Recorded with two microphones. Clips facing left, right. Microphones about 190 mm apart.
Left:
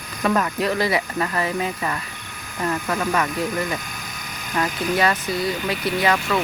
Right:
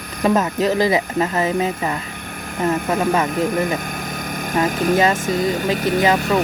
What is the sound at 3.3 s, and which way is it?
Vehicle, 55° right (ahead or behind).